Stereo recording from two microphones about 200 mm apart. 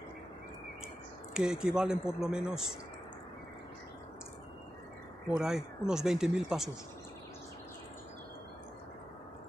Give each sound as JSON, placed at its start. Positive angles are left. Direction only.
{"t": 1.3, "sound": "speech", "side_deg": -5}
{"t": 5.4, "sound": "speech", "side_deg": -5}